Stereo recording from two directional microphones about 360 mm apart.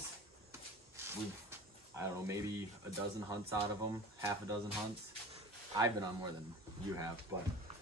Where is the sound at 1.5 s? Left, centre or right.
Centre.